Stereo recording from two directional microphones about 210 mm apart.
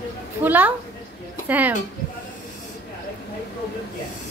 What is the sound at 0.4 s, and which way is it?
Speech, 10° right (ahead or behind).